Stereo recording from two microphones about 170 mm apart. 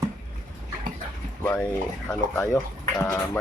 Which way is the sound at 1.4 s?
10° left (ahead or behind).